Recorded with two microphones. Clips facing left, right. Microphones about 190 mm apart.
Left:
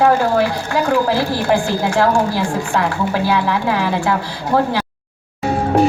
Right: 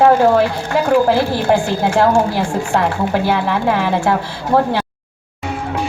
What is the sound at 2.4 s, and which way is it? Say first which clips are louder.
Speech: right 1 dB; 55° right (ahead or behind).